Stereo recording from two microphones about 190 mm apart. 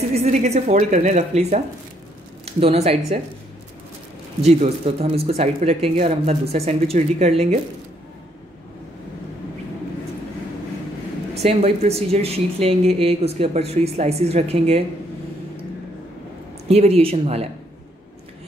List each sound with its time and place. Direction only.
0.1 s speech: 35° right (ahead or behind)
4.5 s speech: 35° right (ahead or behind)
11.3 s speech: 35° right (ahead or behind)
16.6 s speech: 30° right (ahead or behind)